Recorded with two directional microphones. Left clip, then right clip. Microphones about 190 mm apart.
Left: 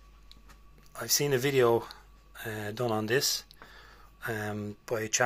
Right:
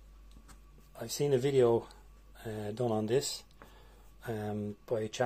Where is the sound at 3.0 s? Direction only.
5° right (ahead or behind).